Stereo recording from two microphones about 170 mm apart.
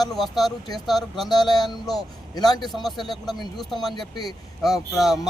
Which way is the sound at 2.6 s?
Centre (ahead or behind).